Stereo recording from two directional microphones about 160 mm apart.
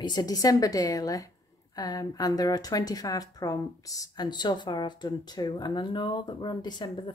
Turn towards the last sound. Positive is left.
turn(degrees=25)  # may be behind; listen again after turning